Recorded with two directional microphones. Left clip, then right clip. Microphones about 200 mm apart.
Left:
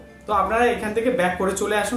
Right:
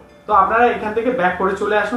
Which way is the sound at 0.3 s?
25° left (ahead or behind).